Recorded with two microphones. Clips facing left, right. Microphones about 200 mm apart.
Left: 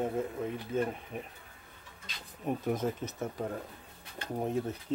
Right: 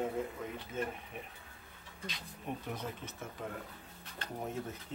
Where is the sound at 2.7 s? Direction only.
40° left (ahead or behind).